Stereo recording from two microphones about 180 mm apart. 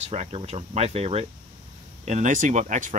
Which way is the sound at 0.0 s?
35° right (ahead or behind).